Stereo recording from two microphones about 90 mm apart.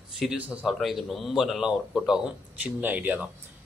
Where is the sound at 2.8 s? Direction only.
20° right (ahead or behind).